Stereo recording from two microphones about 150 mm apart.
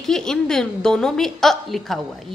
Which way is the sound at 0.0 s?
5° left (ahead or behind).